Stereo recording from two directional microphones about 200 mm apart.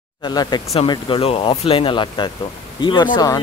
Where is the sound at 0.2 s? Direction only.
20° left (ahead or behind).